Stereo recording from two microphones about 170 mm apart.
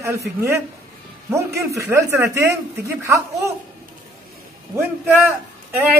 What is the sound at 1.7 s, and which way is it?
A man's voice, 15° right (ahead or behind).